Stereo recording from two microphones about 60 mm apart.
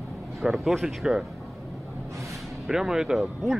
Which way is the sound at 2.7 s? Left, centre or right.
Centre.